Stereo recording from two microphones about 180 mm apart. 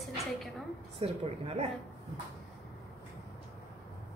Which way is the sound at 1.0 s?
35° right (ahead or behind).